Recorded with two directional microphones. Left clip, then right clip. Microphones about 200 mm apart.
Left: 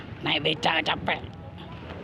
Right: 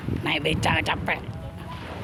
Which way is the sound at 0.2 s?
10° right (ahead or behind).